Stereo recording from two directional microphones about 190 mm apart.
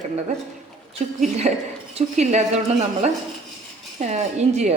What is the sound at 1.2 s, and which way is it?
A woman's voice, 35° right (ahead or behind).